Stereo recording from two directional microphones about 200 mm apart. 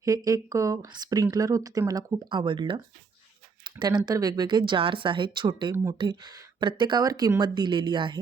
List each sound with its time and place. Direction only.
0.0 s speech: 15° right (ahead or behind)